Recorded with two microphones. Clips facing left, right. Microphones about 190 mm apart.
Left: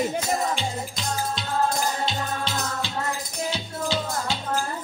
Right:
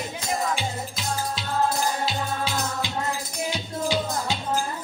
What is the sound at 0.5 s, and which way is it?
Music, 5° right (ahead or behind).